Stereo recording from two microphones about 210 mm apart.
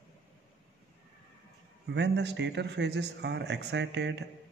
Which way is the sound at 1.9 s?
55° right (ahead or behind).